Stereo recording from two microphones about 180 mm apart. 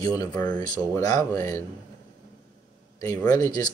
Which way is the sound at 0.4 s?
20° left (ahead or behind).